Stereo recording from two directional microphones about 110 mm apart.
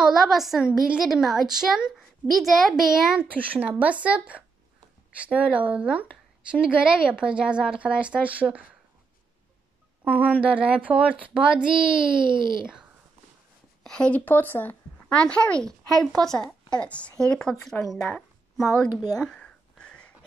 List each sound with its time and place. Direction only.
0.0 s a woman's voice: centre (ahead or behind)
10.0 s speech: 15° right (ahead or behind)
13.8 s speech: 10° left (ahead or behind)
19.1 s a sound: 5° left (ahead or behind)